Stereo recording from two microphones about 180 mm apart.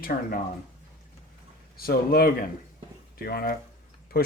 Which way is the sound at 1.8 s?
55° left (ahead or behind).